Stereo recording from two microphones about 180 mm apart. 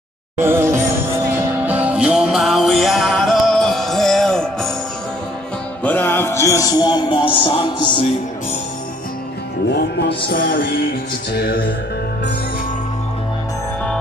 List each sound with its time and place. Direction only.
0.4 s music: 15° right (ahead or behind); by 4.7 s 5° left (ahead or behind)
5.9 s a man's voice: 10° left (ahead or behind); by 8.0 s 25° left (ahead or behind)
9.7 s music: 65° left (ahead or behind)